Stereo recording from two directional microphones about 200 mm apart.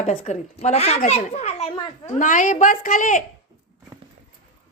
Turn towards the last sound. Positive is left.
turn(degrees=40)  # may be behind; listen again after turning